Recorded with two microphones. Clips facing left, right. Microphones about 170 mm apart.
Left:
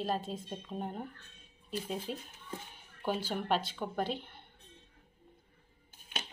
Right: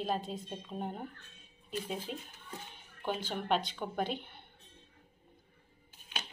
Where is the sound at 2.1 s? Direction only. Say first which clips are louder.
Left 2 dB; 40° left (ahead or behind).